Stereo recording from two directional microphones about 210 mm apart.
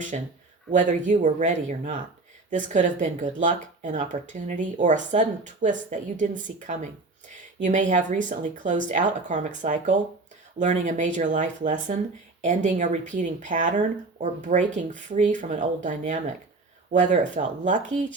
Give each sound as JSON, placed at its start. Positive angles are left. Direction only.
{"t": 0.1, "sound": "speech", "side_deg": -35}